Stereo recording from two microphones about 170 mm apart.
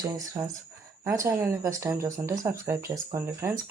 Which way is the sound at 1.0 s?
15° right (ahead or behind).